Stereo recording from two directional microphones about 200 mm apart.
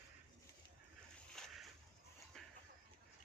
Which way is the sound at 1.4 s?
Centre (ahead or behind).